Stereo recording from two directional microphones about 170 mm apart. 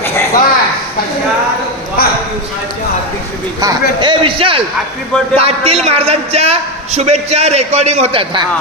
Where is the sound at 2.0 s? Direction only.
60° left (ahead or behind).